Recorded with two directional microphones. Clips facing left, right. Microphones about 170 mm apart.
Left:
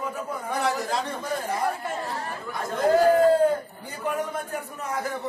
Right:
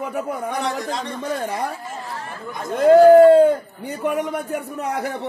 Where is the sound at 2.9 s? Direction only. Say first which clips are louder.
Right 9 dB; 65° right (ahead or behind).